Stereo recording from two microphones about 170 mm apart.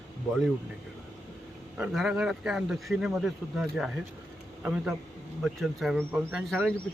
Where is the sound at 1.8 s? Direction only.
Centre (ahead or behind).